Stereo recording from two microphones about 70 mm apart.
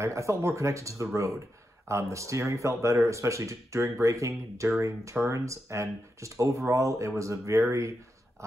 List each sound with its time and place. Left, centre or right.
0.0 s speech: right